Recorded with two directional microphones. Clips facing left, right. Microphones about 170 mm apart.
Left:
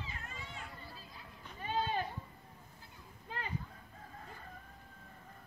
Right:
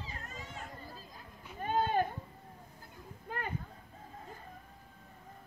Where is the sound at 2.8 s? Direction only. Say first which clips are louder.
Right 5 dB; 50° right (ahead or behind).